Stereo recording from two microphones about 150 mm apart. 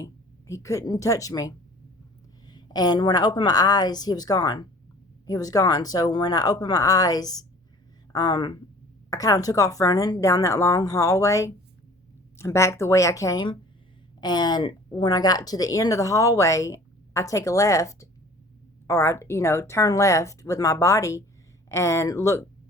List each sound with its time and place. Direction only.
0.0 s a woman's voice: 20° left (ahead or behind)